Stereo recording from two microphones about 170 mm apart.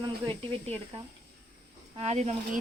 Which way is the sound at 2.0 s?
40° right (ahead or behind).